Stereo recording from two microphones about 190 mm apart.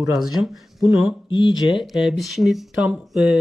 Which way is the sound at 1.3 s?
25° left (ahead or behind).